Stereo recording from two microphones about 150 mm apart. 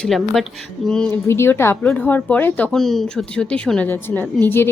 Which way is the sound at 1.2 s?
15° left (ahead or behind).